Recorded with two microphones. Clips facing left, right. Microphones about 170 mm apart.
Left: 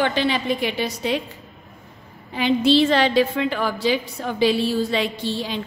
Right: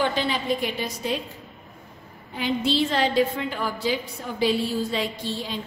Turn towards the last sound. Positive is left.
turn(degrees=85)